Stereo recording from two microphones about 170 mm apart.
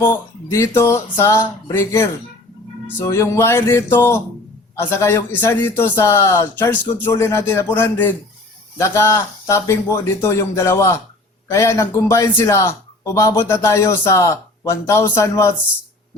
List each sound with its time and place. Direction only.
0.0 s a man's voice: 15° left (ahead or behind)